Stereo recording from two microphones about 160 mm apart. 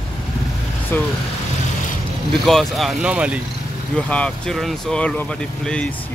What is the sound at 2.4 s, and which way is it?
Speech, centre (ahead or behind).